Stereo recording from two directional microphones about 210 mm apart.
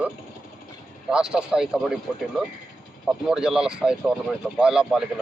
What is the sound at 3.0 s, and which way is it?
Speech, 5° right (ahead or behind).